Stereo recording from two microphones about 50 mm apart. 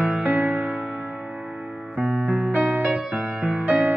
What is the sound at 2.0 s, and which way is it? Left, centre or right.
Music, right.